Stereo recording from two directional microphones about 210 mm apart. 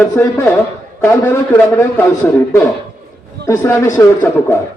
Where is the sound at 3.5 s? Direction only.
15° left (ahead or behind).